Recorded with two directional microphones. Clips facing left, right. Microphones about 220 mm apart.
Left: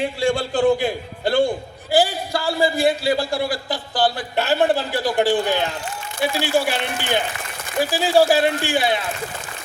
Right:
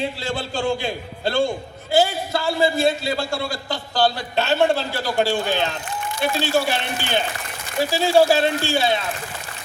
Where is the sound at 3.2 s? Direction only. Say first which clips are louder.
Left 3 dB; 20° left (ahead or behind).